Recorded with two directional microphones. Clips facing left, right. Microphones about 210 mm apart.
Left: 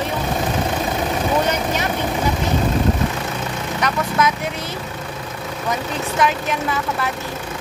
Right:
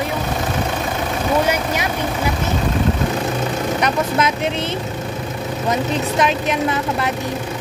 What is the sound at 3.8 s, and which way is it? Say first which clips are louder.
Speech: left 1 dB; 20° right (ahead or behind).